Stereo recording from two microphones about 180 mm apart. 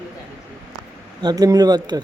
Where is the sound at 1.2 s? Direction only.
20° right (ahead or behind).